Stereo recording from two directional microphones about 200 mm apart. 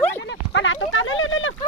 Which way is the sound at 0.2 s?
60° left (ahead or behind).